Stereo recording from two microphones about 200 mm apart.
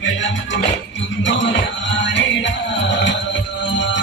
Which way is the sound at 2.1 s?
65° left (ahead or behind).